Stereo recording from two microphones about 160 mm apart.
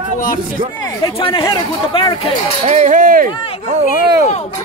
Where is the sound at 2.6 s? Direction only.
50° right (ahead or behind).